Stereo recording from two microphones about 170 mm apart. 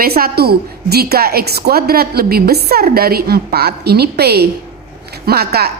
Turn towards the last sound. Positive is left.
turn(degrees=-65)  # may be behind; listen again after turning